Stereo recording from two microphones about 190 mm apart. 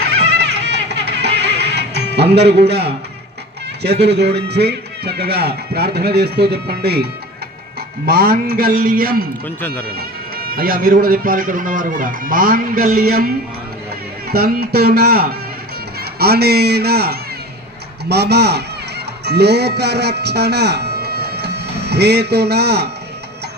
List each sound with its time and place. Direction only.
0.0 s music: 60° right (ahead or behind)
2.3 s speech: 60° right (ahead or behind)
3.8 s speech: 60° right (ahead or behind)
9.6 s speech: 10° left (ahead or behind)
9.8 s a man's voice: 55° right (ahead or behind)